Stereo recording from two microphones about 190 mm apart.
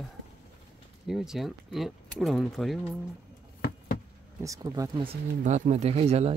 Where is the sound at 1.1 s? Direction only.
Centre (ahead or behind).